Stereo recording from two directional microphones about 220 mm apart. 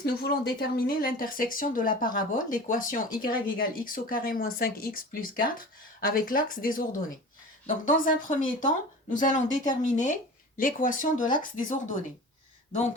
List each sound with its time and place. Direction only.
0.0 s speech: 45° left (ahead or behind)